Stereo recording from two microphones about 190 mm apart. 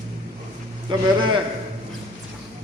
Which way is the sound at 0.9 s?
25° right (ahead or behind).